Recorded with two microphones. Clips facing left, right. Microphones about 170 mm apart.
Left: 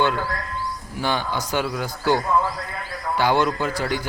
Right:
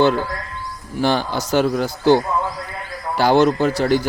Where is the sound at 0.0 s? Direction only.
30° right (ahead or behind).